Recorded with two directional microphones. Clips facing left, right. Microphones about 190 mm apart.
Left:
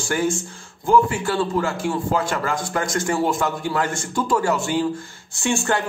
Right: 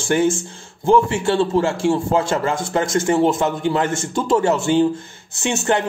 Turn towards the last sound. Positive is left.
turn(degrees=-20)  # may be behind; listen again after turning